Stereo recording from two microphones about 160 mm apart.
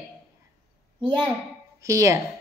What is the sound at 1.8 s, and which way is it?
Speech, 20° right (ahead or behind).